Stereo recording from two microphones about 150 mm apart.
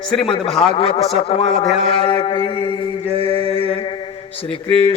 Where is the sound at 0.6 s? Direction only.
35° left (ahead or behind).